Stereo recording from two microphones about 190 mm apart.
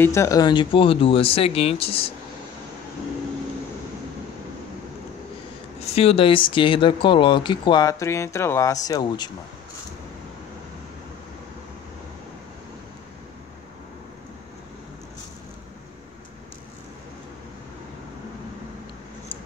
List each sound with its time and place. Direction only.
0.0 s speech: 15° left (ahead or behind); by 2.1 s 30° left (ahead or behind)
5.9 s speech: 30° left (ahead or behind)